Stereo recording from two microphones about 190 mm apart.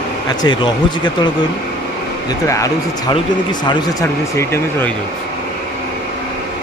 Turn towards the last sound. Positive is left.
turn(degrees=15)  # may be behind; listen again after turning